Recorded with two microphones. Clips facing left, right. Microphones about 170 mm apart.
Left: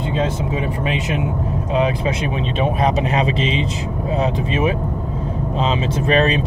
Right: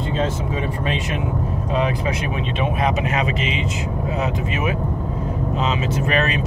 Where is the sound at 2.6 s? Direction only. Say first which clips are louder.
Left 3 dB; 35° left (ahead or behind).